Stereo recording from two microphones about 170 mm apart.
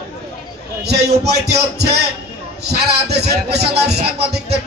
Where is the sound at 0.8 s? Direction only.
75° right (ahead or behind).